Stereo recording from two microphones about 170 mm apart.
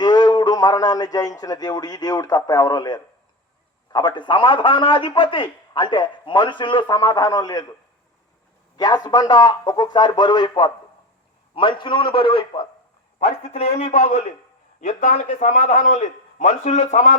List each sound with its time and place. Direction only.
0.0 s a man's voice: 25° left (ahead or behind)
8.7 s a man's voice: 25° left (ahead or behind); by 17.2 s 45° left (ahead or behind)